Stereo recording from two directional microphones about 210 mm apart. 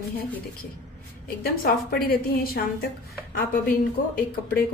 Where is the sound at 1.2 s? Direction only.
45° left (ahead or behind).